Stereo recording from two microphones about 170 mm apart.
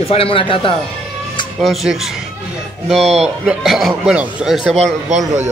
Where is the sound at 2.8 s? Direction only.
Centre (ahead or behind).